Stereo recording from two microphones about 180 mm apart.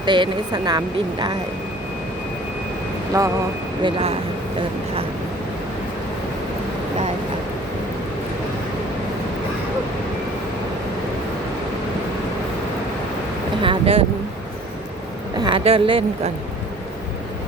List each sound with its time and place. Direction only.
0.0 s speech: 25° right (ahead or behind)
3.1 s speech: 15° right (ahead or behind)
3.8 s speech: 30° right (ahead or behind)
13.6 s speech: 30° right (ahead or behind)
15.4 s a woman's voice: 30° right (ahead or behind)